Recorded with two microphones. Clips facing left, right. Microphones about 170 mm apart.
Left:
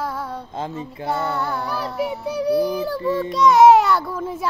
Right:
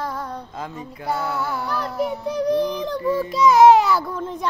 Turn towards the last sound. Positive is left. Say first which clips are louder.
# left 1 dB
turn(degrees=5)  # may be behind; listen again after turning